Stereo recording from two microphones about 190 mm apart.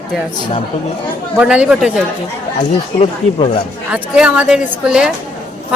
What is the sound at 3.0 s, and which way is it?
Speech, 30° left (ahead or behind).